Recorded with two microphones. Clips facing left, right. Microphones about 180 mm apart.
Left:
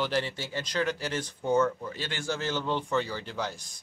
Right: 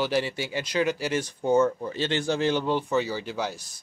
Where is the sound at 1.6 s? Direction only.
25° right (ahead or behind).